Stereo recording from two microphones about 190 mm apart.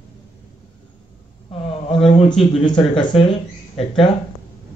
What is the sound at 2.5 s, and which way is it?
Speech, 25° left (ahead or behind).